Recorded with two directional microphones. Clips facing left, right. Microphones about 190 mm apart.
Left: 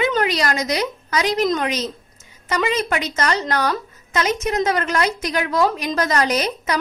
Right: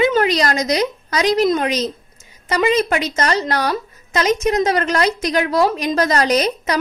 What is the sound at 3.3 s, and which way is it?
A woman's voice, 15° right (ahead or behind).